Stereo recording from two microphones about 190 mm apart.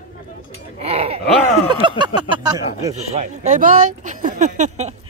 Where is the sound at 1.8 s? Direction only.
25° right (ahead or behind).